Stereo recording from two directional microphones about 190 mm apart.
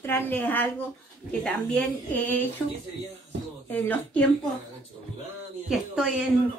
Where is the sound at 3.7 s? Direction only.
10° left (ahead or behind).